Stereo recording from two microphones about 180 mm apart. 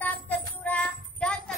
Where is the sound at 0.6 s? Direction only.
5° left (ahead or behind).